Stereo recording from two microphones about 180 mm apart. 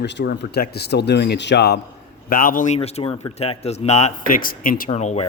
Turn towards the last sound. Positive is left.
turn(degrees=40)  # may be behind; listen again after turning